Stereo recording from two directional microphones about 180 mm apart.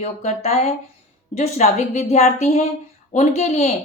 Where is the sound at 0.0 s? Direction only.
35° left (ahead or behind).